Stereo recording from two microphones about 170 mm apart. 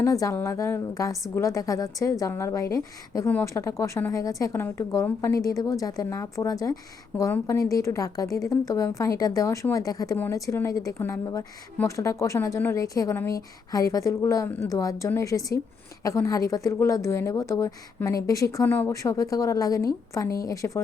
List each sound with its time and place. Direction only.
0.0 s a woman's voice: 20° left (ahead or behind)